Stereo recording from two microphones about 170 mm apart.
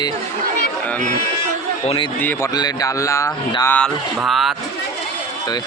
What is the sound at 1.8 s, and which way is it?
Speech, 30° left (ahead or behind).